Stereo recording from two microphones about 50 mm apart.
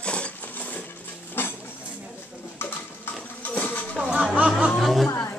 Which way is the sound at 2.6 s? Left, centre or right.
Left.